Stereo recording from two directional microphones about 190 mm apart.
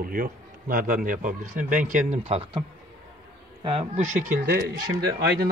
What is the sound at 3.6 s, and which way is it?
Speech, 30° right (ahead or behind).